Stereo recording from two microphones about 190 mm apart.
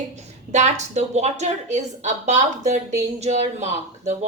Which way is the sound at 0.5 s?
35° right (ahead or behind).